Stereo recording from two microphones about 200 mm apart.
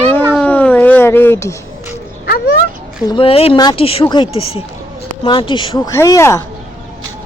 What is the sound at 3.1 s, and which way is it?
Speech, 25° left (ahead or behind).